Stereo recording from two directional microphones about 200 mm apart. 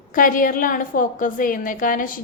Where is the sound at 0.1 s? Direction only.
40° left (ahead or behind).